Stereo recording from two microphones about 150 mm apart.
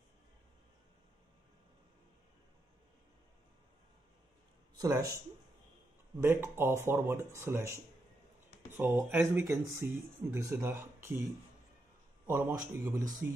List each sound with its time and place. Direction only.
4.7 s speech: 25° right (ahead or behind)
6.2 s speech: 15° right (ahead or behind)
12.3 s speech: 15° right (ahead or behind)